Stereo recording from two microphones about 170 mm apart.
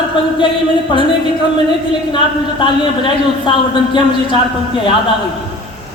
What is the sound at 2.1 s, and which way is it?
A man's voice, 30° left (ahead or behind).